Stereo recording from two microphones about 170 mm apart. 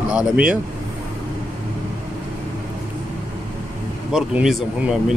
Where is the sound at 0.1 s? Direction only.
5° right (ahead or behind).